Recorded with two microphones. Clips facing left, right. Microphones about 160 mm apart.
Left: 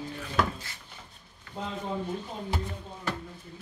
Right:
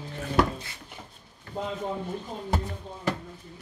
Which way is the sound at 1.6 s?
40° right (ahead or behind).